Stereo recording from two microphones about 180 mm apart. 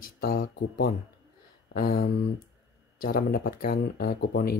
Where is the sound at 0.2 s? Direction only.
55° left (ahead or behind).